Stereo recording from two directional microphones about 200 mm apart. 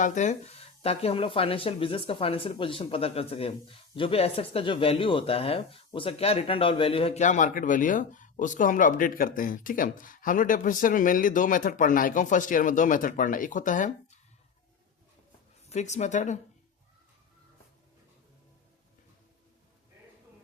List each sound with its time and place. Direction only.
0.0 s speech: 35° left (ahead or behind)
15.7 s speech: 35° left (ahead or behind)